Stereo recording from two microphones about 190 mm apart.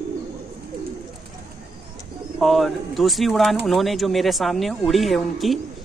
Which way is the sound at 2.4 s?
Centre (ahead or behind).